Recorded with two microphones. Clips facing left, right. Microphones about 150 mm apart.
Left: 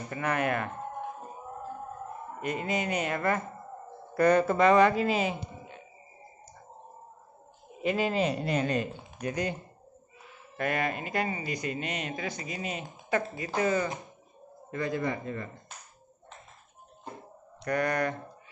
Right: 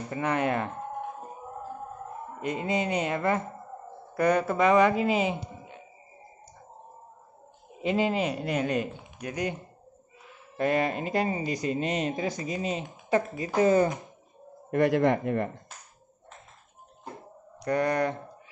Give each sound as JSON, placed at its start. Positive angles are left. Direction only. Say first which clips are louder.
{"t": 0.1, "sound": "speech", "louder": "right 2 dB", "side_deg": -20}
{"t": 2.4, "sound": "speech", "louder": "right 2 dB", "side_deg": -20}
{"t": 4.2, "sound": "speech", "louder": "left 1 dB", "side_deg": -10}
{"t": 7.8, "sound": "speech", "louder": "right 1 dB", "side_deg": -20}
{"t": 10.6, "sound": "speech", "louder": "right 4 dB", "side_deg": -30}
{"t": 14.7, "sound": "speech", "louder": "right 8 dB", "side_deg": -75}
{"t": 17.6, "sound": "speech", "louder": "right 3 dB", "side_deg": -25}